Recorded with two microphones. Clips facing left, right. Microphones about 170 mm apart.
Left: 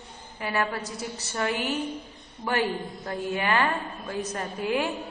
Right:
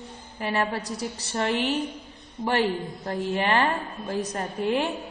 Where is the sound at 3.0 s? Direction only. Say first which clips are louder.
Right 2 dB; 35° right (ahead or behind).